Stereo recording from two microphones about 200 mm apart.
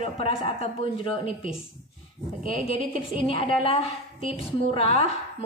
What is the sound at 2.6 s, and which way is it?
A woman's voice, 30° left (ahead or behind).